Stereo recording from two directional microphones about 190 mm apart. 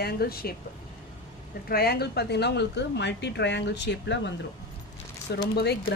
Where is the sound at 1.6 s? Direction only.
55° left (ahead or behind).